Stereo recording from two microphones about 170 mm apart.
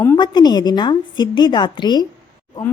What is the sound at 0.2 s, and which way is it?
A woman's voice, 25° left (ahead or behind).